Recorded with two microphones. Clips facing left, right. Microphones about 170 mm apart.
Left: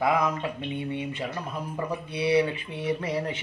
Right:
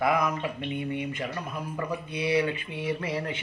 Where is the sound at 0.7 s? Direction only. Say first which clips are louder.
Even; 25° left (ahead or behind).